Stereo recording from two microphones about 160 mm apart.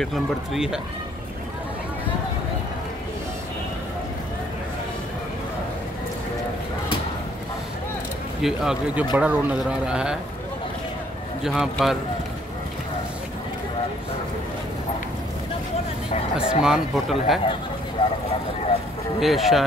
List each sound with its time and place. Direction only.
0.0 s speech: centre (ahead or behind)
8.4 s speech: 5° right (ahead or behind)
11.4 s speech: 5° right (ahead or behind)
16.3 s speech: 5° right (ahead or behind)
18.0 s vehicle: 30° left (ahead or behind)
19.1 s speech: centre (ahead or behind)